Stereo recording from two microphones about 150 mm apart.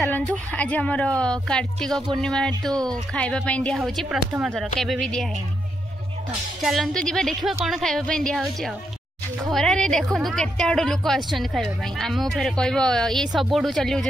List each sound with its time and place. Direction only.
0.0 s a woman's voice: 10° left (ahead or behind)
2.7 s speech: 25° right (ahead or behind)
3.2 s a woman's voice: 5° left (ahead or behind)
6.6 s a woman's voice: centre (ahead or behind)